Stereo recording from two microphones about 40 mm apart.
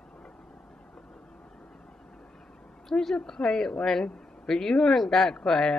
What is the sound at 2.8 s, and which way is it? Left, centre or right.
A woman's voice, centre.